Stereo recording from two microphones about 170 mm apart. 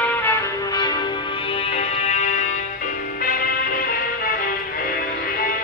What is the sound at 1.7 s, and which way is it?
Music, 40° left (ahead or behind).